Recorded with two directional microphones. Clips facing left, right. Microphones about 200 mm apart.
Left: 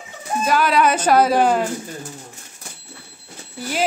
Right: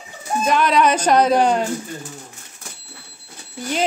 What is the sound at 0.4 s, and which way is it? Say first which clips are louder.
Speech: right 1 dB; 5° left (ahead or behind).